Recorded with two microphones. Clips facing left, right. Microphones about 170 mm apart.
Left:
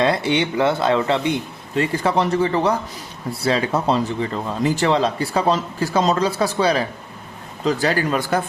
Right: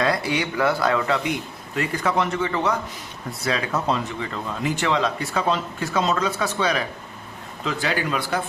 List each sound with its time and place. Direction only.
0.0 s speech: 25° left (ahead or behind); by 8.4 s 40° left (ahead or behind)